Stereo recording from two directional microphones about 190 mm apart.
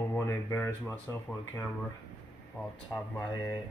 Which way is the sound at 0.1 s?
15° left (ahead or behind).